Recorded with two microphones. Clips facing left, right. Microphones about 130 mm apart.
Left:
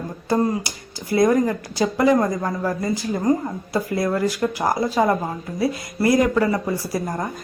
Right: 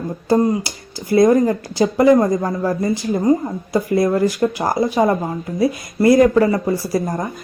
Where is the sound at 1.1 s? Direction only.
25° right (ahead or behind).